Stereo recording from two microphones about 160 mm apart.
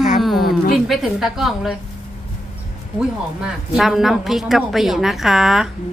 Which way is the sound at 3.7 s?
Centre (ahead or behind).